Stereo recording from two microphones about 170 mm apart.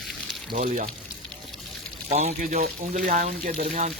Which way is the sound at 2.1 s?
40° right (ahead or behind).